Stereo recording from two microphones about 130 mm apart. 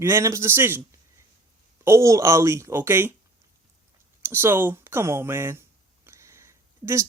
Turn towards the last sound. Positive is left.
turn(degrees=-20)  # may be behind; listen again after turning